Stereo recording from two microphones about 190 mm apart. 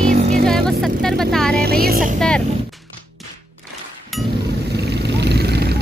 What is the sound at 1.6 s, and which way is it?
Speech, 55° right (ahead or behind).